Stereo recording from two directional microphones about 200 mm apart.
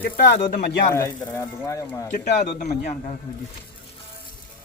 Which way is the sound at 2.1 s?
40° left (ahead or behind).